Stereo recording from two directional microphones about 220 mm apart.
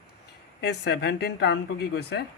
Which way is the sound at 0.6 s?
50° left (ahead or behind).